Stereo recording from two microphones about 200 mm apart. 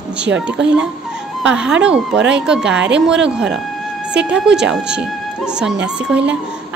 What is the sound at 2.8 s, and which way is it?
Speech, 60° right (ahead or behind).